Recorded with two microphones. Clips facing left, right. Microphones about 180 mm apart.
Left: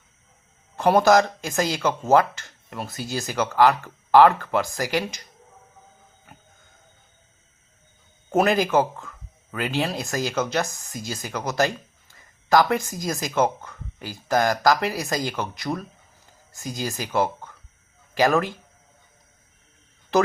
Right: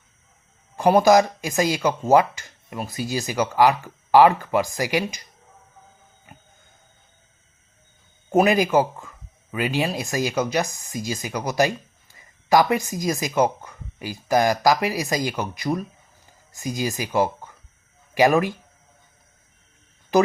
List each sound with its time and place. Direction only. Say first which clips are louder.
0.8 s speech: right 2 dB; 10° right (ahead or behind)
2.7 s speech: right 2 dB; centre (ahead or behind)
3.0 s speech: right 2 dB; 15° right (ahead or behind)
8.4 s speech: right 2 dB; 15° right (ahead or behind)
16.9 s speech: even; 15° right (ahead or behind)